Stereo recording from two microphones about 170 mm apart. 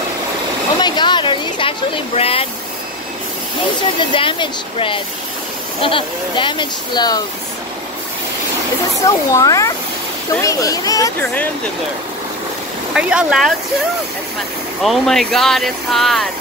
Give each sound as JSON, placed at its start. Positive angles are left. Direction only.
{"t": 0.7, "sound": "a sound", "side_deg": 25}
{"t": 4.1, "sound": "speech", "side_deg": 30}
{"t": 9.0, "sound": "speech", "side_deg": 20}
{"t": 12.9, "sound": "speech", "side_deg": -5}
{"t": 14.8, "sound": "speech", "side_deg": 0}